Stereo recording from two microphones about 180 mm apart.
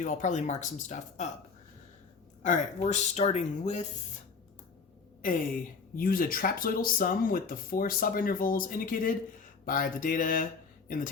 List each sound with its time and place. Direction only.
0.0 s speech: 45° left (ahead or behind)
2.4 s speech: 45° left (ahead or behind)
6.0 s speech: 50° left (ahead or behind)